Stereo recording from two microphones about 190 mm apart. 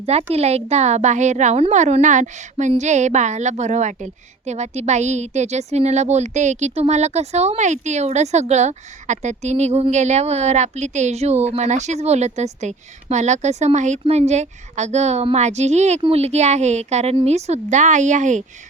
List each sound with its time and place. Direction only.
0.0 s a woman's voice: 35° right (ahead or behind)